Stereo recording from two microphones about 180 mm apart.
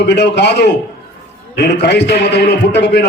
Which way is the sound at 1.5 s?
70° left (ahead or behind).